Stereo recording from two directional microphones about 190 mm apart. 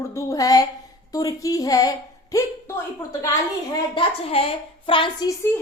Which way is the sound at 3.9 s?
30° left (ahead or behind).